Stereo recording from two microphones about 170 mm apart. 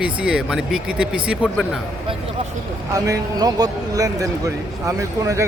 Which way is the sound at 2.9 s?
20° right (ahead or behind).